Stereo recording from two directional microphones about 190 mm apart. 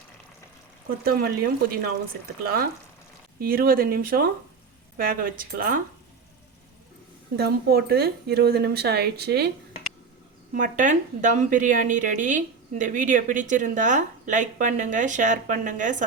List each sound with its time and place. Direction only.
0.9 s a woman's voice: 50° right (ahead or behind)
3.4 s a woman's voice: 50° right (ahead or behind)
7.3 s speech: 55° right (ahead or behind)
10.5 s a woman's voice: 40° right (ahead or behind)